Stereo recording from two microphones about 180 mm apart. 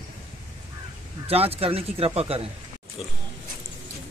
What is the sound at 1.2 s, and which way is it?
Speech, 35° right (ahead or behind).